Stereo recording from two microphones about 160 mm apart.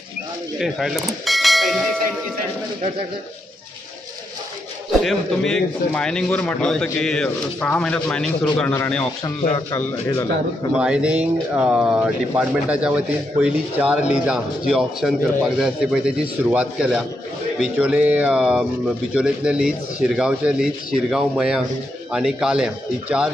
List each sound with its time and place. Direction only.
0.6 s bell: centre (ahead or behind)
5.0 s a man's voice: 5° left (ahead or behind)
9.2 s speech: 20° left (ahead or behind)
10.8 s a man's voice: 5° right (ahead or behind)